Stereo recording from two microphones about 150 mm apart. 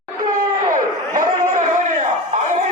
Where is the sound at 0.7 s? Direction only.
60° right (ahead or behind).